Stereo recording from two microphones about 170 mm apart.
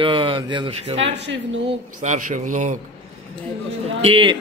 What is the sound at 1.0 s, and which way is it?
Speech, 90° right.